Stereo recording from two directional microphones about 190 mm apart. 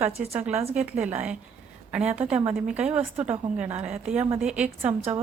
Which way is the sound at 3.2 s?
30° right (ahead or behind).